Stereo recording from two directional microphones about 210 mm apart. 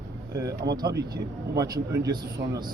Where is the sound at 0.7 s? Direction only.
20° right (ahead or behind).